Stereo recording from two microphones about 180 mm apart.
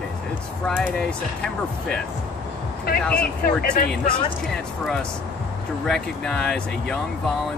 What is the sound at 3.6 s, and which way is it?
Speech, 55° left (ahead or behind).